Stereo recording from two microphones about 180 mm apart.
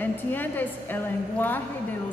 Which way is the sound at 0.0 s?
10° left (ahead or behind).